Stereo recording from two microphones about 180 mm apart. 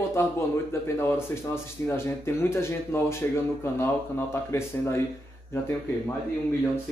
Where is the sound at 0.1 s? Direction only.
15° left (ahead or behind).